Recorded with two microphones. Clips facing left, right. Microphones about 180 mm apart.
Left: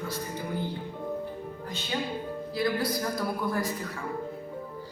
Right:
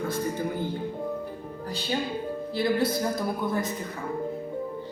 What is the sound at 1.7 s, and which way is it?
Speech, 35° right (ahead or behind).